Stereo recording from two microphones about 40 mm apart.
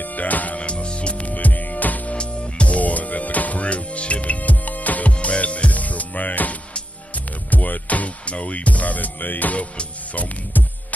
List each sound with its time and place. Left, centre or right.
0.0 s music: left
0.6 s music: left
7.5 s music: left